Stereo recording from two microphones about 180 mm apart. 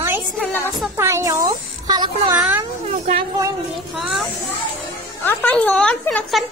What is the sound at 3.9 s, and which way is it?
Speech, centre (ahead or behind).